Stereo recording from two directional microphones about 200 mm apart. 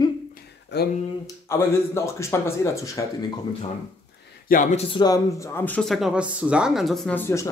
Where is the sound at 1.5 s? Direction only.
15° left (ahead or behind).